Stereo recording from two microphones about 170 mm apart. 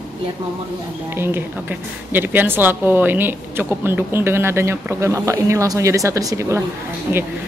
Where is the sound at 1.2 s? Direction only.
10° right (ahead or behind).